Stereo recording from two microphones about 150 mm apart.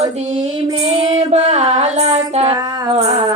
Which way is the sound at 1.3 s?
45° right (ahead or behind).